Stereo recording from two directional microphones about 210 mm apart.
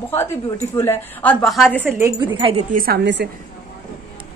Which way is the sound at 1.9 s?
15° right (ahead or behind).